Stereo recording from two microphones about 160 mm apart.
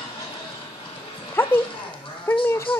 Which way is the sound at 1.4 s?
15° left (ahead or behind).